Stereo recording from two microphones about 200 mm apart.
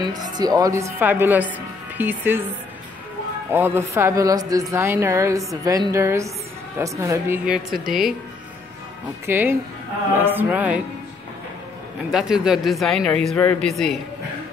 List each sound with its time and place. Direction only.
0.0 s a woman's voice: 20° right (ahead or behind)
3.5 s a woman's voice: 10° right (ahead or behind)
9.2 s a woman's voice: 10° right (ahead or behind)
12.1 s speech: 5° right (ahead or behind)